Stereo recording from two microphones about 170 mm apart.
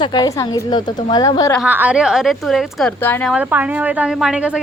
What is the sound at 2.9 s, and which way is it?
Speech, 10° left (ahead or behind).